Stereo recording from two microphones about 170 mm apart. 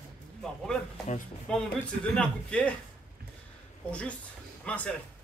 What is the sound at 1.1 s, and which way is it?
Speech, 45° left (ahead or behind).